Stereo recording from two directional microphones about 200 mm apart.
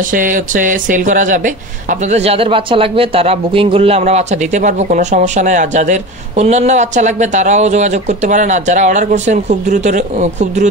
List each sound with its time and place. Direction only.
0.1 s speech: 40° right (ahead or behind)